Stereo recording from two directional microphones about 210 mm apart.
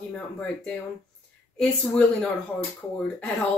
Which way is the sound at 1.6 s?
5° left (ahead or behind).